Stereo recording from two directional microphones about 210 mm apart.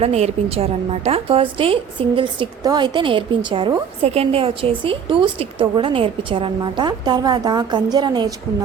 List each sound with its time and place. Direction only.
0.0 s a woman's voice: 30° right (ahead or behind)